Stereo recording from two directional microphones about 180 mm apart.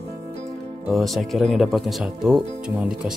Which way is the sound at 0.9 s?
Centre (ahead or behind).